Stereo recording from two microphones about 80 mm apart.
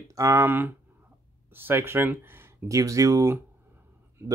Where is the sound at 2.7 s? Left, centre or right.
Right.